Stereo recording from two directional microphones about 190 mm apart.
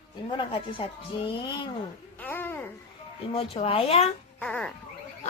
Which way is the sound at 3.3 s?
30° left (ahead or behind).